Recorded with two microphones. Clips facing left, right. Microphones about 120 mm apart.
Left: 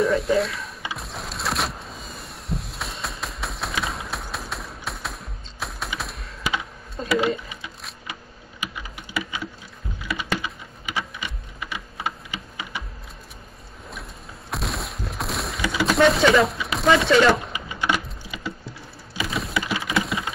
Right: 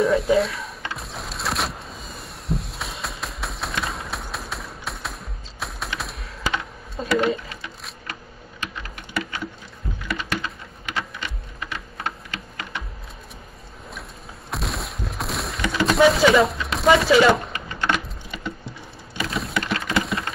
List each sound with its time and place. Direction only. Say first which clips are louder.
0.0 s a sound: right 2 dB; centre (ahead or behind)
8.1 s typing: right 2 dB; 10° left (ahead or behind)
14.5 s fusillade: even; centre (ahead or behind)
18.0 s typing: right 1 dB; 5° left (ahead or behind)